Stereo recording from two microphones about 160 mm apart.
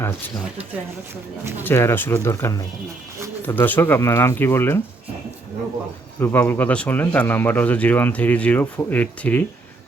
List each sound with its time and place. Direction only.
1.6 s speech: 15° left (ahead or behind)
6.1 s speech: 15° left (ahead or behind)